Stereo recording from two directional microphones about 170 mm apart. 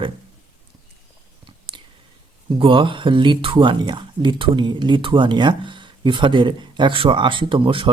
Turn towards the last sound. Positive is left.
turn(degrees=-30)  # may be behind; listen again after turning